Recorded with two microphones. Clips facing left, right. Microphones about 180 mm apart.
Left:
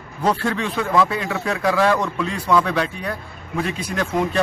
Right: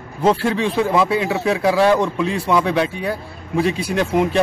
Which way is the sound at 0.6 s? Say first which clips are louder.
Right 1 dB; 25° right (ahead or behind).